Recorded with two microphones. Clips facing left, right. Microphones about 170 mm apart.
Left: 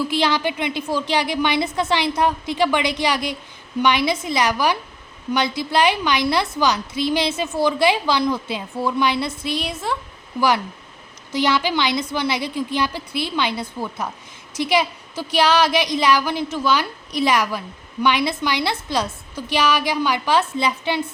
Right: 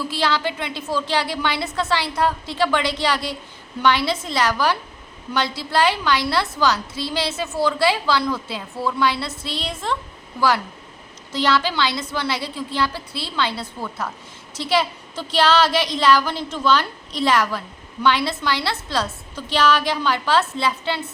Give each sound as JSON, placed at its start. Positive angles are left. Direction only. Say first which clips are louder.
{"t": 0.0, "sound": "a woman's voice", "louder": "left 2 dB", "side_deg": 15}
{"t": 11.3, "sound": "a woman's voice", "louder": "left 1 dB", "side_deg": 15}